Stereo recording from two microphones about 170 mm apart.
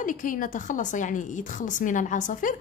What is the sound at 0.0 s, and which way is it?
A woman's voice, 50° left (ahead or behind).